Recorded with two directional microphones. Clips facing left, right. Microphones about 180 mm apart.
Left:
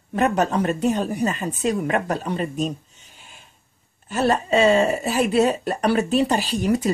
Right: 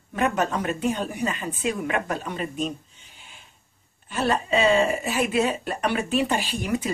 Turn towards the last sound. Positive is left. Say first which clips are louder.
# left 6 dB
turn(degrees=40)  # may be behind; listen again after turning